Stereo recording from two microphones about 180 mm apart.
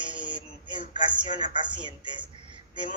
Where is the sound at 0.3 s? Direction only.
25° right (ahead or behind).